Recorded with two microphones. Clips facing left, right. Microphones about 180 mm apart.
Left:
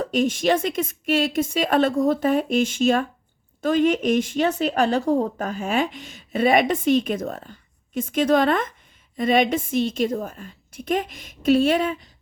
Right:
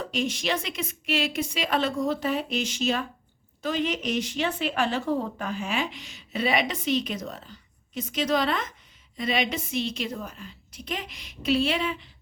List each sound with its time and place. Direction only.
0.0 s speech: 45° left (ahead or behind)